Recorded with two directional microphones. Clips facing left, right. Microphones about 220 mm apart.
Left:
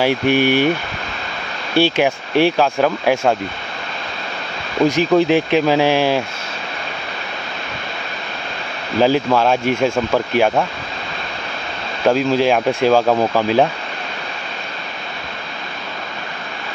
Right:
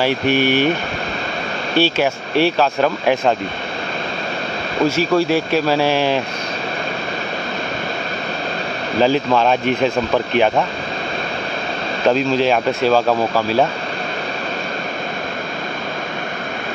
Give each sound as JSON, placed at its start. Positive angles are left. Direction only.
{"t": 0.0, "sound": "speech", "side_deg": 15}
{"t": 1.8, "sound": "speech", "side_deg": 15}
{"t": 4.8, "sound": "speech", "side_deg": 15}
{"t": 9.0, "sound": "speech", "side_deg": 10}
{"t": 12.1, "sound": "speech", "side_deg": 10}